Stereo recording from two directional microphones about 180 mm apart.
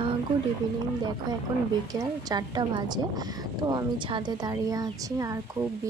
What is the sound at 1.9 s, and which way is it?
A woman's voice, 20° right (ahead or behind).